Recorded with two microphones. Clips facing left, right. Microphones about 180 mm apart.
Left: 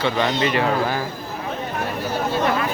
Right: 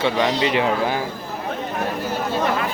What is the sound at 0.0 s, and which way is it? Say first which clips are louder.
Speech: right 1 dB; 15° right (ahead or behind).